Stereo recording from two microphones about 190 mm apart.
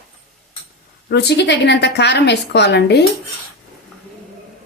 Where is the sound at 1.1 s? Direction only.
65° left (ahead or behind).